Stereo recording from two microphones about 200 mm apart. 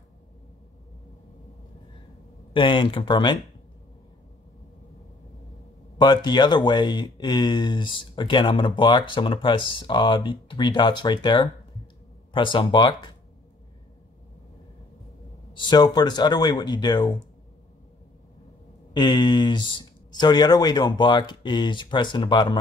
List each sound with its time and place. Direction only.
2.5 s speech: 25° left (ahead or behind)
5.9 s speech: 20° left (ahead or behind)
15.5 s speech: 20° left (ahead or behind)
18.9 s speech: 20° left (ahead or behind)